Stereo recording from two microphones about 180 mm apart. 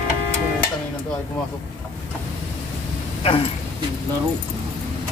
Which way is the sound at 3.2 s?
30° left (ahead or behind).